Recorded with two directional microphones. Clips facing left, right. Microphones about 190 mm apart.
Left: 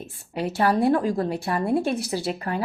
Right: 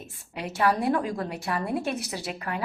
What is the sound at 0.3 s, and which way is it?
Speech, 30° left (ahead or behind).